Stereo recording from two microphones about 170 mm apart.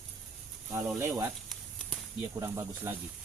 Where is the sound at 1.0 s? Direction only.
15° right (ahead or behind).